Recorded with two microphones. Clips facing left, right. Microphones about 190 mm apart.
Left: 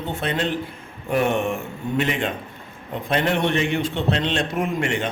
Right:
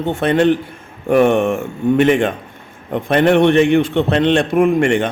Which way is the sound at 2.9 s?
60° right (ahead or behind).